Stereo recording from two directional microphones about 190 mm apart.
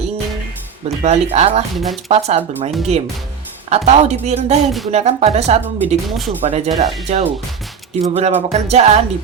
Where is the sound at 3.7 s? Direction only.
35° right (ahead or behind).